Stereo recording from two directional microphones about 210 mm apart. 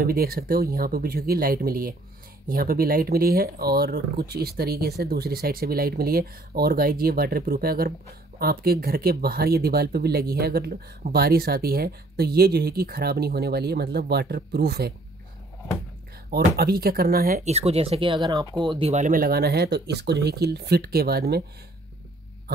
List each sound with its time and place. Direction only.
0.0 s speech: 45° right (ahead or behind)
16.3 s speech: 50° right (ahead or behind)
17.5 s speech: 30° right (ahead or behind); by 21.5 s 50° right (ahead or behind)